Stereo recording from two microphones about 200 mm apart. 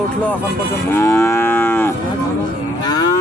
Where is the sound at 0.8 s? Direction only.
15° left (ahead or behind).